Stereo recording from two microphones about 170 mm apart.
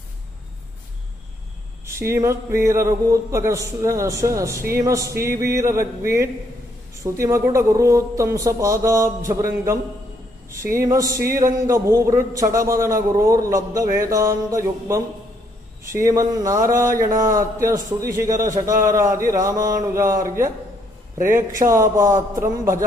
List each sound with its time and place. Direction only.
1.9 s a man's voice: 15° right (ahead or behind)
10.8 s a man's voice: 20° right (ahead or behind)
18.5 s a man's voice: 50° right (ahead or behind)
18.9 s a man's voice: 15° right (ahead or behind)